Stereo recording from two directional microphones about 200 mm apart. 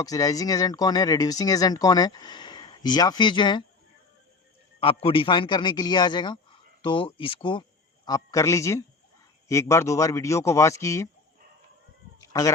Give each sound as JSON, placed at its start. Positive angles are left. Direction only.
{"t": 0.0, "sound": "speech", "side_deg": 15}
{"t": 4.8, "sound": "a man's voice", "side_deg": 30}
{"t": 12.3, "sound": "a man's voice", "side_deg": 15}